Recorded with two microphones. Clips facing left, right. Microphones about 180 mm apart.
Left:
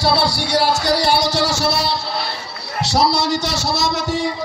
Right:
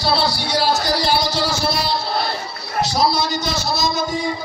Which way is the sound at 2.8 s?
75° left (ahead or behind).